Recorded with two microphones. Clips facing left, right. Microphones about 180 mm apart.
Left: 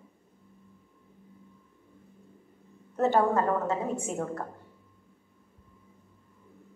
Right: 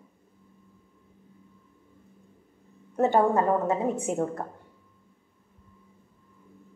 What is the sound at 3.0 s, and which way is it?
Speech, 15° right (ahead or behind).